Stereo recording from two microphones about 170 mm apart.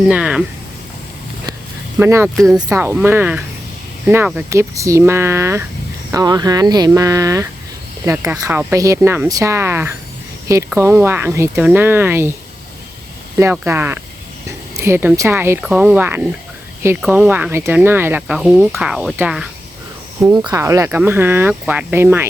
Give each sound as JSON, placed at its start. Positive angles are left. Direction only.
{"t": 0.1, "sound": "speech", "side_deg": -5}
{"t": 2.0, "sound": "speech", "side_deg": -15}
{"t": 2.3, "sound": "speech", "side_deg": 0}
{"t": 2.6, "sound": "speech", "side_deg": -10}
{"t": 13.4, "sound": "speech", "side_deg": -15}
{"t": 20.2, "sound": "speech", "side_deg": -20}